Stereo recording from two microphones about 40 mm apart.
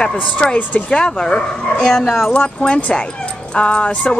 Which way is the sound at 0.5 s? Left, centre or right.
Left.